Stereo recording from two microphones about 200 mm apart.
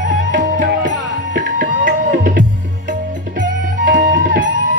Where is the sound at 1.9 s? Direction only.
45° right (ahead or behind).